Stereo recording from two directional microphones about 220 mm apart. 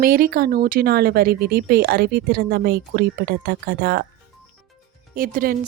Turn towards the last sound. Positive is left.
turn(degrees=-40)  # may be behind; listen again after turning